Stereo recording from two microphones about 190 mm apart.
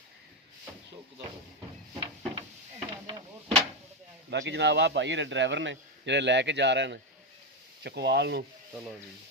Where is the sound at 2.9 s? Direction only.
25° right (ahead or behind).